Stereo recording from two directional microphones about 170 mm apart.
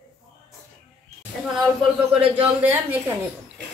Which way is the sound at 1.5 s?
Centre (ahead or behind).